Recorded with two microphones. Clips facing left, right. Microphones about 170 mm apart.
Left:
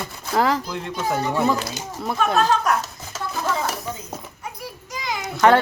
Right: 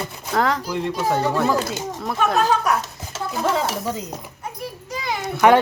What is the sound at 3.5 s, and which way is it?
Speech, 85° right.